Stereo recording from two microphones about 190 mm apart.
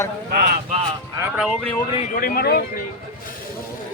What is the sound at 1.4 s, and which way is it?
Speech, centre (ahead or behind).